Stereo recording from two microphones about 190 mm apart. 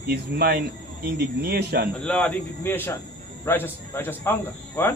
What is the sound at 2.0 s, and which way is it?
Speech, 5° left (ahead or behind).